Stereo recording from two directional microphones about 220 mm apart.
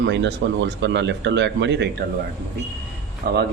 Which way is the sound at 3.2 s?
45° right (ahead or behind).